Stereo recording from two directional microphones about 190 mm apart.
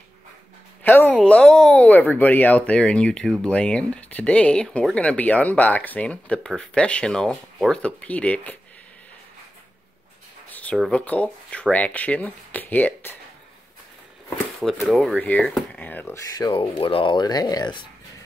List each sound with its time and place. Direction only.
0.8 s speech: 10° left (ahead or behind)
10.5 s a sound: 10° left (ahead or behind)
10.8 s speech: 5° left (ahead or behind)
14.6 s speech: centre (ahead or behind)
16.3 s speech: 20° left (ahead or behind)